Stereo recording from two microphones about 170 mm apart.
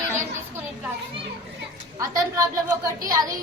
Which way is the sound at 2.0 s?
20° right (ahead or behind).